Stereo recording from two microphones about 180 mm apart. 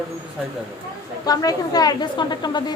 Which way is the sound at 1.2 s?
20° left (ahead or behind).